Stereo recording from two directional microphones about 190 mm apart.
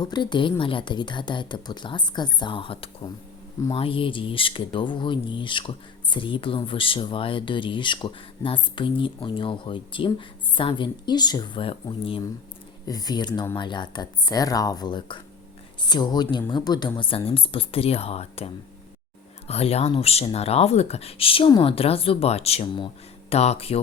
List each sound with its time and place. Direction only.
0.0 s speech: 25° left (ahead or behind)